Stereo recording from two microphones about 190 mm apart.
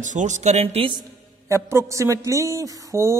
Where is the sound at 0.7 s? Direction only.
25° right (ahead or behind).